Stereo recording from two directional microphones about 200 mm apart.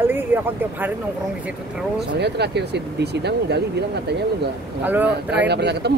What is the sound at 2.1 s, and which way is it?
Speech, 55° right (ahead or behind).